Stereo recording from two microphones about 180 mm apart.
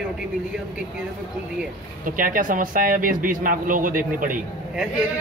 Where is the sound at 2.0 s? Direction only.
50° right (ahead or behind).